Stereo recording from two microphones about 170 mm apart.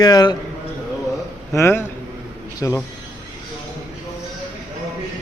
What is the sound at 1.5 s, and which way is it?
A man's voice, 15° left (ahead or behind).